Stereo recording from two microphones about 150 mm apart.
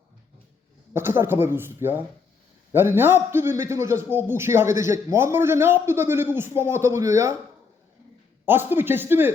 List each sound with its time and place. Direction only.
0.9 s a man's voice: 15° right (ahead or behind)
8.4 s a man's voice: 15° right (ahead or behind)